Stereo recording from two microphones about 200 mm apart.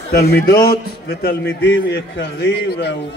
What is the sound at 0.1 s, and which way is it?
A man's voice, 55° left (ahead or behind).